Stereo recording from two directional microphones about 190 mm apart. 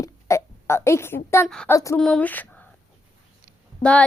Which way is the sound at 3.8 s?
5° left (ahead or behind).